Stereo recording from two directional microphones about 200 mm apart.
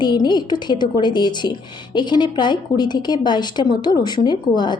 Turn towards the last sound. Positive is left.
turn(degrees=20)  # may be behind; listen again after turning